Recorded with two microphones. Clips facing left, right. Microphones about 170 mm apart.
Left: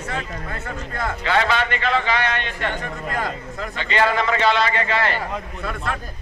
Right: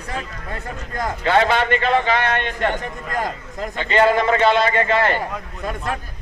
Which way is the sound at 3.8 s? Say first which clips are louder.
Right 4 dB; 50° right (ahead or behind).